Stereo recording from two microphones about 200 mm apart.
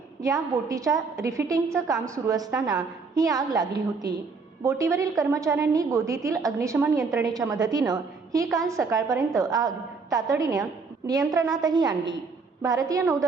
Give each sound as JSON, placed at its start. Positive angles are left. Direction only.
{"t": 0.2, "sound": "a woman's voice", "side_deg": -15}